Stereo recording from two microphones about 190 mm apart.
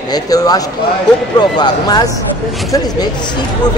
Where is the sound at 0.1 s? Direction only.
20° left (ahead or behind).